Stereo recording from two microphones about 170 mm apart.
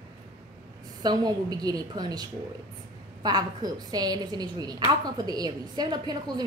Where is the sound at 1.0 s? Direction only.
25° right (ahead or behind).